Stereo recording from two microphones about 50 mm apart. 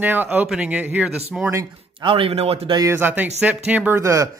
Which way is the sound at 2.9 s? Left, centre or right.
Right.